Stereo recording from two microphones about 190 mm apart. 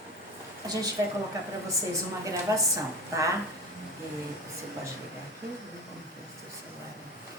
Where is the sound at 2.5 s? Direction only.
15° right (ahead or behind).